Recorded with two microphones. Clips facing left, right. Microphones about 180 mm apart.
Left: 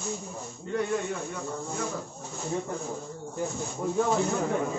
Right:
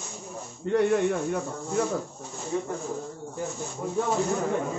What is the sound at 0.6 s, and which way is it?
Speech, 65° right (ahead or behind).